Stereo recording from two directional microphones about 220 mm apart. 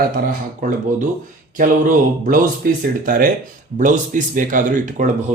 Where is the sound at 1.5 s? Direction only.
40° right (ahead or behind).